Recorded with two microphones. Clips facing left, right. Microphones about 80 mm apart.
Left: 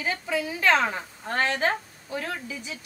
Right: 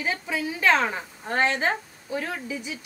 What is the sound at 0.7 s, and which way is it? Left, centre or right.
Speech, centre.